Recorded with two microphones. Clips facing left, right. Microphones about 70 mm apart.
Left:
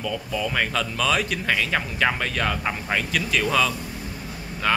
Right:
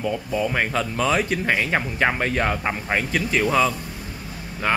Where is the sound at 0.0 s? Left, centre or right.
Right.